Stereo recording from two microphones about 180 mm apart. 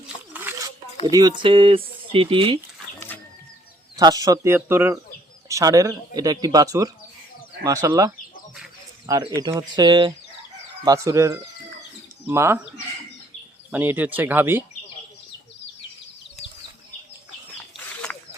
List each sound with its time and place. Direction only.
0.3 s a sound: 10° right (ahead or behind)
1.0 s speech: 25° right (ahead or behind)
3.9 s speech: 20° right (ahead or behind)
13.7 s speech: 10° right (ahead or behind)